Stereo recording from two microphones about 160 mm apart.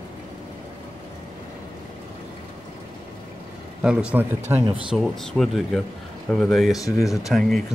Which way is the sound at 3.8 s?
5° right (ahead or behind).